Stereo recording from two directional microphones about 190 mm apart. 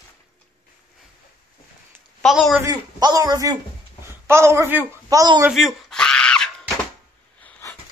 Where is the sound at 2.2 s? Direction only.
Centre (ahead or behind).